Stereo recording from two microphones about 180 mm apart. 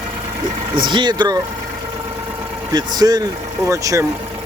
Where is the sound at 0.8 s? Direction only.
25° right (ahead or behind).